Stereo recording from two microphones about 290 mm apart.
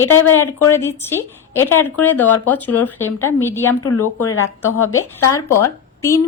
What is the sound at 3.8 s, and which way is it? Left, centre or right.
Speech, left.